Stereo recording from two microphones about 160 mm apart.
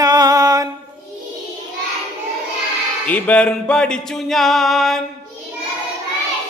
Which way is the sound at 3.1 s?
10° left (ahead or behind).